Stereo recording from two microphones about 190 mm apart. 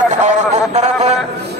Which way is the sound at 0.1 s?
40° right (ahead or behind).